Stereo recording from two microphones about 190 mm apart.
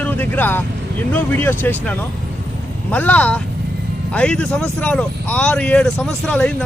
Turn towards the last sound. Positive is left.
turn(degrees=5)  # may be behind; listen again after turning